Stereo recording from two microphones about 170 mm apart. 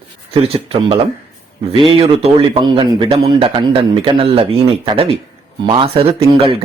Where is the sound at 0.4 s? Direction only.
35° right (ahead or behind).